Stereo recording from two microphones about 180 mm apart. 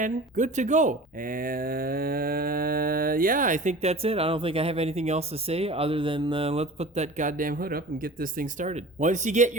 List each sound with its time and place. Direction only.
0.0 s speech: 45° right (ahead or behind)